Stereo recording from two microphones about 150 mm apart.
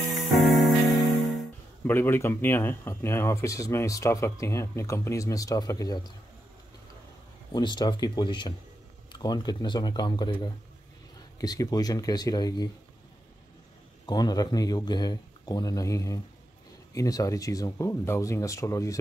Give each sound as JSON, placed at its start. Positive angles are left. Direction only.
{"t": 0.1, "sound": "music", "side_deg": 0}
{"t": 1.9, "sound": "speech", "side_deg": 15}
{"t": 7.5, "sound": "speech", "side_deg": 30}
{"t": 14.0, "sound": "speech", "side_deg": 25}